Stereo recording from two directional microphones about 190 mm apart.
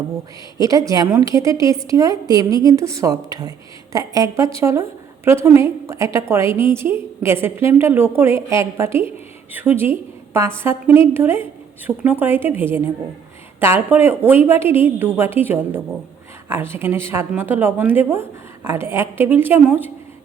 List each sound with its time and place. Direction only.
0.6 s a woman's voice: 20° right (ahead or behind)